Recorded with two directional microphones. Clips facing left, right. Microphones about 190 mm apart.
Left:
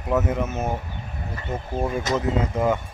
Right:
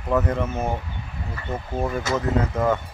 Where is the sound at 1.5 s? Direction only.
10° left (ahead or behind).